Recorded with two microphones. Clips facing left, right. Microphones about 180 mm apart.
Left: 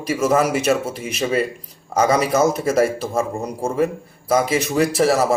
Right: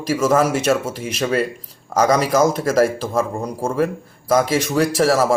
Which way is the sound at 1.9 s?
5° left (ahead or behind).